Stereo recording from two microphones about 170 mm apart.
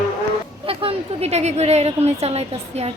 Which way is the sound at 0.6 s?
35° right (ahead or behind).